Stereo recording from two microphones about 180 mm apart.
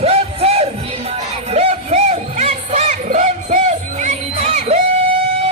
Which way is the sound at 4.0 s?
40° right (ahead or behind).